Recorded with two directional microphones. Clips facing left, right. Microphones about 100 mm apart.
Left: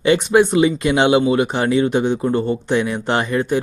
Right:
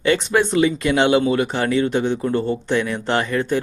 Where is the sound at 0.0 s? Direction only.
20° left (ahead or behind).